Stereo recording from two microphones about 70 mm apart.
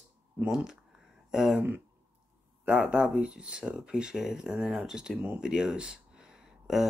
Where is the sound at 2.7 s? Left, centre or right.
Centre.